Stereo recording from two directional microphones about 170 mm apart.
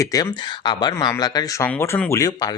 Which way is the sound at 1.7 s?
10° left (ahead or behind).